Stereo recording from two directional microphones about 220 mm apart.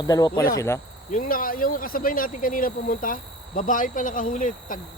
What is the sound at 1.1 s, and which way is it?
Speech, 40° left (ahead or behind).